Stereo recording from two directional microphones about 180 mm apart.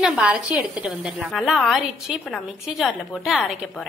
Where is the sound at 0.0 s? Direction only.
Centre (ahead or behind).